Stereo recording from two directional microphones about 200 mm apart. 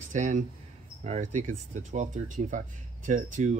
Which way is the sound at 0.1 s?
40° right (ahead or behind).